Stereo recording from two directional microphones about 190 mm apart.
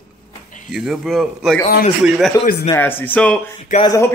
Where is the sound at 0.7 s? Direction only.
Centre (ahead or behind).